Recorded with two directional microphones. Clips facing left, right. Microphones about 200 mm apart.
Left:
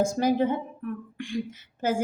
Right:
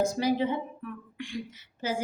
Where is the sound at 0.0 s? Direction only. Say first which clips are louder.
Left 3 dB; 50° left (ahead or behind).